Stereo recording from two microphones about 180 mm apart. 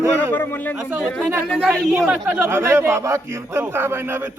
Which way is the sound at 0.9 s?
10° right (ahead or behind).